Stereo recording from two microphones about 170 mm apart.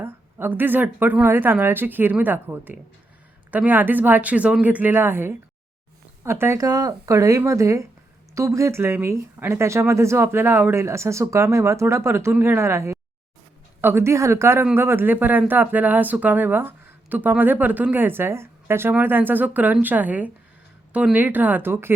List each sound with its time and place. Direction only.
0.0 s speech: 15° right (ahead or behind)